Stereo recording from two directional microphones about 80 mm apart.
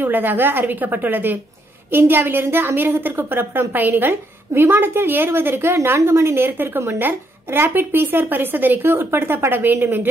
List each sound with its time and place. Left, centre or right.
0.0 s speech: right